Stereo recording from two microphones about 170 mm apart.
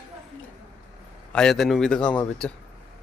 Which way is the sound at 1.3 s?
5° left (ahead or behind).